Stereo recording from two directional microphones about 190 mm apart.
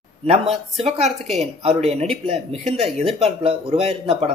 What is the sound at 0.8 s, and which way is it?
A man's voice, 35° right (ahead or behind).